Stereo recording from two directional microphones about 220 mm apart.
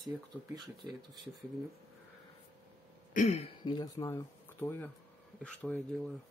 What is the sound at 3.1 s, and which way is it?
Speech, 30° left (ahead or behind).